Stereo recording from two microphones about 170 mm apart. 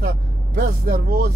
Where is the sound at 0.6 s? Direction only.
55° right (ahead or behind).